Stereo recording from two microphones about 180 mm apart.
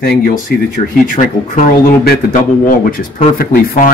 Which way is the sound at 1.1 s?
50° left (ahead or behind).